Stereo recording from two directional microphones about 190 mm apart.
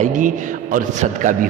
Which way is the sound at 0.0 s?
40° right (ahead or behind).